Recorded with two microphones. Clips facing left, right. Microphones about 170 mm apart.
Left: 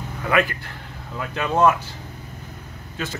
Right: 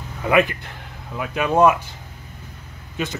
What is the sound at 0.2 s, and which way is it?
Speech, 20° right (ahead or behind).